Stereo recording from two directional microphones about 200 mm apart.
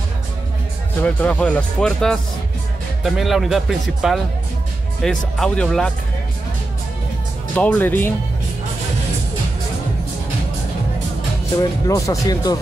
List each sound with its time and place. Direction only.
1.0 s speech: 5° left (ahead or behind)
7.5 s speech: 10° left (ahead or behind)
11.6 s speech: 15° left (ahead or behind)